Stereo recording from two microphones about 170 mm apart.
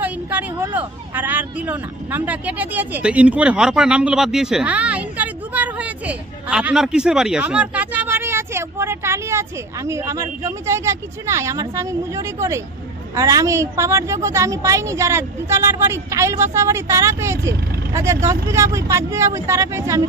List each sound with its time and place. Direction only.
0.0 s a woman's voice: 10° right (ahead or behind)